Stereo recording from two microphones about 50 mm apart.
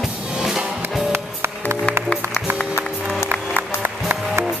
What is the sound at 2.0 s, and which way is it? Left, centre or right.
Music, right.